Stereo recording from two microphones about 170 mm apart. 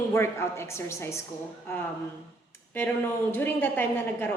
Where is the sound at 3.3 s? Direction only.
10° left (ahead or behind).